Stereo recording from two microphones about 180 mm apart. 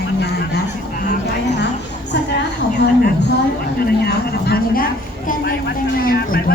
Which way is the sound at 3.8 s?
60° left (ahead or behind).